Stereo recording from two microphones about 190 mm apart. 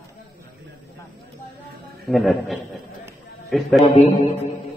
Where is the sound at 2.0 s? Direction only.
Centre (ahead or behind).